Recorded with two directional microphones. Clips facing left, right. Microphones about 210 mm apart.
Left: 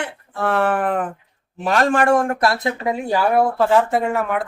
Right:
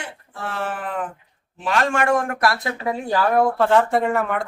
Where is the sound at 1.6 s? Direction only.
40° left (ahead or behind); by 4.5 s centre (ahead or behind).